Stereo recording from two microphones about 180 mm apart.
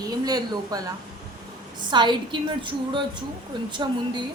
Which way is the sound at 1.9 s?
25° right (ahead or behind).